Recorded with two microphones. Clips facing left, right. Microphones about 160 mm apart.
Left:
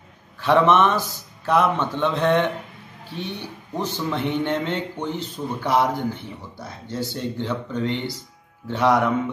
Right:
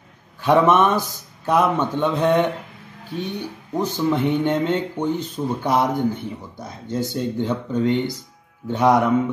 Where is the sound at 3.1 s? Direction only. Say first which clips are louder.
Right 4 dB; 45° right (ahead or behind).